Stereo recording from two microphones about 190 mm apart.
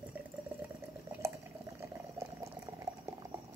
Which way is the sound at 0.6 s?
10° right (ahead or behind).